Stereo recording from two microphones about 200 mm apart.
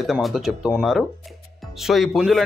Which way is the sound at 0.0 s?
Centre (ahead or behind).